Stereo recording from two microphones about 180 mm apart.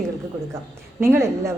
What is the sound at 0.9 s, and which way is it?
Speech, 15° right (ahead or behind).